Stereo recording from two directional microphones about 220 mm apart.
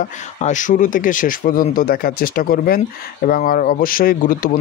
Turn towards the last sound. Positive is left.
turn(degrees=40)  # may be behind; listen again after turning